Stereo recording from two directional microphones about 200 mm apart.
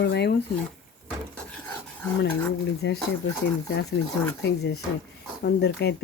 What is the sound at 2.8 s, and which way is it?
Speech, 65° left (ahead or behind).